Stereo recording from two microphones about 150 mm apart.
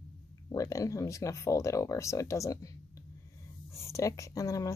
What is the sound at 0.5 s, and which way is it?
Speech, 20° left (ahead or behind).